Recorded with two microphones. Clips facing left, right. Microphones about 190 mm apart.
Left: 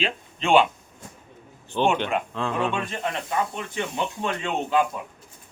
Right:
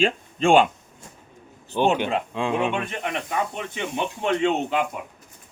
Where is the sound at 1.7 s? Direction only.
10° right (ahead or behind).